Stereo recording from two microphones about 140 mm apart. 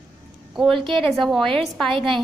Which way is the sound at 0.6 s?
Centre (ahead or behind).